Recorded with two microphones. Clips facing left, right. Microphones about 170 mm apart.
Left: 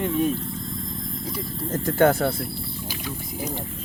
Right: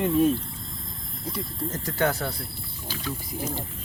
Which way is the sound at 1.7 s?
50° left (ahead or behind).